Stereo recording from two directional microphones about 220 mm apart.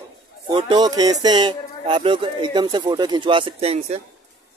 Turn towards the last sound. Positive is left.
turn(degrees=-30)  # may be behind; listen again after turning